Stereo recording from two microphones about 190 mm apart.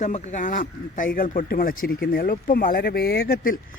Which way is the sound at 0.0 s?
40° left (ahead or behind).